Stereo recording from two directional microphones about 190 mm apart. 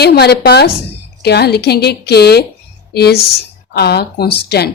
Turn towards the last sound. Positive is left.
turn(degrees=60)  # may be behind; listen again after turning